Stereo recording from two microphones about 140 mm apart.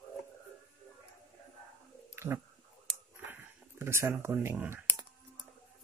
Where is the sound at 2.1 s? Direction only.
20° right (ahead or behind).